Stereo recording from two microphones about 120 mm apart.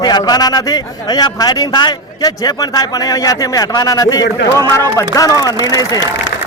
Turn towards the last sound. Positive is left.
turn(degrees=30)  # may be behind; listen again after turning